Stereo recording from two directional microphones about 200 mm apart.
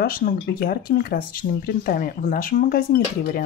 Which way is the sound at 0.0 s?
45° left (ahead or behind).